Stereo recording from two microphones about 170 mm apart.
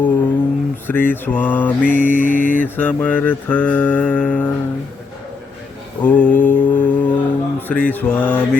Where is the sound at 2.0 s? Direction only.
50° left (ahead or behind).